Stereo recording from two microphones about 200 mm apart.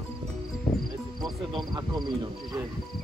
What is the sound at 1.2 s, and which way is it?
Speech, 20° right (ahead or behind).